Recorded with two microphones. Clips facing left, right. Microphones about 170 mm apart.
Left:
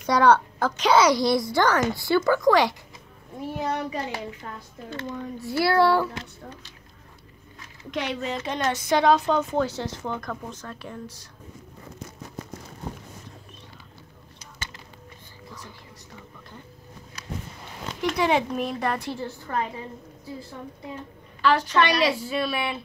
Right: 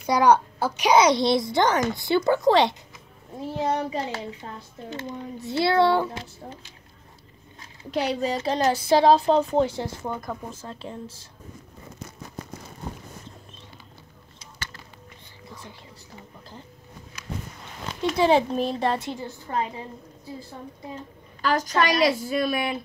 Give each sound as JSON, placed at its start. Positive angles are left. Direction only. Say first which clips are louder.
{"t": 0.0, "sound": "a child's voice", "louder": "even", "side_deg": -10}
{"t": 7.9, "sound": "a woman's voice", "louder": "right 4 dB", "side_deg": -35}
{"t": 18.1, "sound": "a child's voice", "louder": "right 4 dB", "side_deg": -30}
{"t": 21.4, "sound": "a woman's voice", "louder": "left 2 dB", "side_deg": -40}